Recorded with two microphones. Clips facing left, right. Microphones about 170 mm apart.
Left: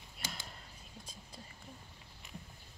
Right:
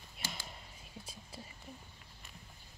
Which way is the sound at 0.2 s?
Centre (ahead or behind).